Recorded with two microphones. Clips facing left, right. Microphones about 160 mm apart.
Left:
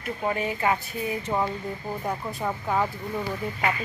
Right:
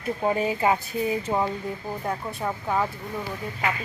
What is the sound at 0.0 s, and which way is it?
A woman's voice, 30° right (ahead or behind).